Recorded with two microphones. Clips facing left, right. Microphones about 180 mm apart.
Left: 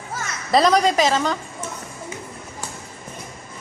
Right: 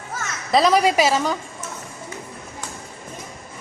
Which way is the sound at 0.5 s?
5° right (ahead or behind).